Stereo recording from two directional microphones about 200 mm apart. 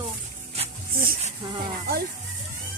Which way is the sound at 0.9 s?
45° right (ahead or behind).